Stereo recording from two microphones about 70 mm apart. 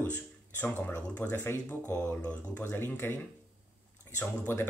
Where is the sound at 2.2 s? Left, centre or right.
Left.